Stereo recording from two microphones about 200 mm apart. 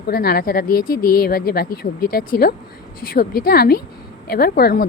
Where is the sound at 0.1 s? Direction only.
50° left (ahead or behind).